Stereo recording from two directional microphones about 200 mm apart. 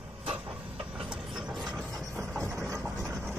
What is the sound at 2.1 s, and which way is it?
Vehicle, 15° right (ahead or behind).